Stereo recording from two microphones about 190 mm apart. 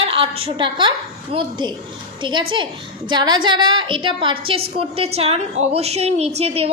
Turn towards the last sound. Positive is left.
turn(degrees=-30)  # may be behind; listen again after turning